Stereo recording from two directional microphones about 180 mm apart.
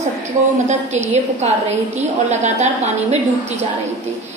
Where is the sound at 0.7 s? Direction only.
40° right (ahead or behind).